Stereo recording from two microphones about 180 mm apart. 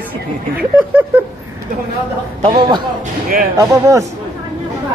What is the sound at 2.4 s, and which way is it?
A man's voice, 25° right (ahead or behind).